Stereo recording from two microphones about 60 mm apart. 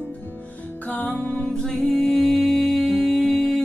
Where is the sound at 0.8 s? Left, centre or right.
Left.